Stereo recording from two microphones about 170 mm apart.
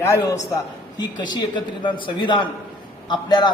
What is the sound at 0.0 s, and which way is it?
A man's voice, 15° left (ahead or behind).